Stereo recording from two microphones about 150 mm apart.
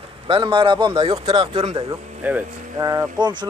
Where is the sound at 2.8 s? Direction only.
20° right (ahead or behind).